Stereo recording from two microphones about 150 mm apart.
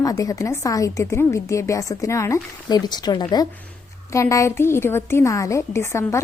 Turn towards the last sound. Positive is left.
turn(degrees=20)  # may be behind; listen again after turning